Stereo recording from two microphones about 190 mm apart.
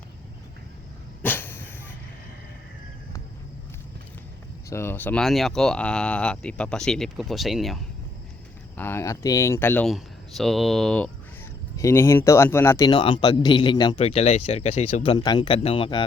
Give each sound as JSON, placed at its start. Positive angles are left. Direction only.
{"t": 1.2, "sound": "dog", "side_deg": 10}
{"t": 4.7, "sound": "speech", "side_deg": 10}
{"t": 8.7, "sound": "speech", "side_deg": 10}